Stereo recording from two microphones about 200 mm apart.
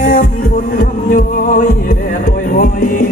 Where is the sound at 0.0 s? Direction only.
45° left (ahead or behind).